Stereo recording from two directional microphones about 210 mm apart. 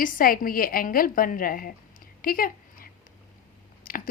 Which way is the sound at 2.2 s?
45° left (ahead or behind).